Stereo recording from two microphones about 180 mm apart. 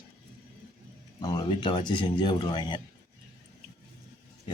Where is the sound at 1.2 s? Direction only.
25° left (ahead or behind).